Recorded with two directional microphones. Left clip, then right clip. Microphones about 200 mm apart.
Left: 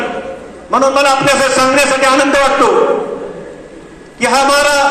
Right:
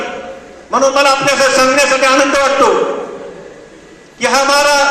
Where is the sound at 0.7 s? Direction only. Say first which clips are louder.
Even; 15° left (ahead or behind).